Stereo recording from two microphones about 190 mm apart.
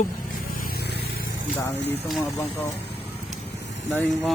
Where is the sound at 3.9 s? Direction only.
5° left (ahead or behind).